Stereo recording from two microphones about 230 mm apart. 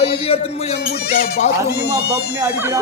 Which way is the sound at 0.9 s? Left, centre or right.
Left.